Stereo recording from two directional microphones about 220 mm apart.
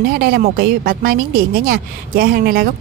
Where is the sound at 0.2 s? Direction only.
45° right (ahead or behind).